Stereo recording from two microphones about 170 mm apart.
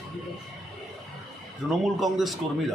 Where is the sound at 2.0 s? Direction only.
Centre (ahead or behind).